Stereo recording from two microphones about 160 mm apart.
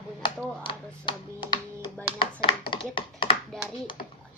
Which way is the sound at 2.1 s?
35° left (ahead or behind).